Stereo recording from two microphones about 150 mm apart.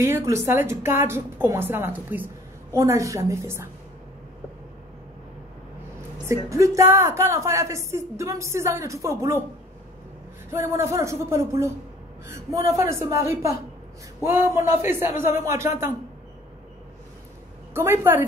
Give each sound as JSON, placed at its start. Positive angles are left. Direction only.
{"t": 0.0, "sound": "a woman's voice", "side_deg": -20}
{"t": 6.2, "sound": "a woman's voice", "side_deg": -20}
{"t": 10.5, "sound": "a woman's voice", "side_deg": -20}
{"t": 17.7, "sound": "a woman's voice", "side_deg": -15}